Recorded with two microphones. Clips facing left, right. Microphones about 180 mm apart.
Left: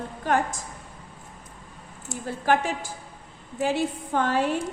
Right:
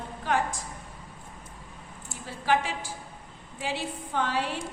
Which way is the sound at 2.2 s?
50° left (ahead or behind).